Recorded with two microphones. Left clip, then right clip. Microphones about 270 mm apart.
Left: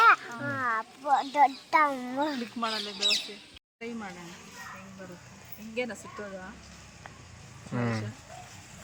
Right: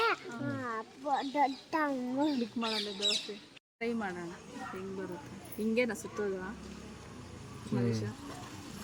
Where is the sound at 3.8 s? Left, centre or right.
Centre.